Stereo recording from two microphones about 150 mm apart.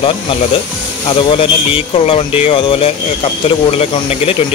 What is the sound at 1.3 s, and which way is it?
Speech, 40° left (ahead or behind).